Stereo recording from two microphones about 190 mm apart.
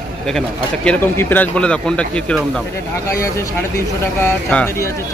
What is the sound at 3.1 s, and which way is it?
Speech, 15° left (ahead or behind).